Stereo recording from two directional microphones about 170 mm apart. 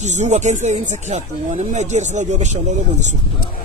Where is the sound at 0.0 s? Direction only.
45° right (ahead or behind).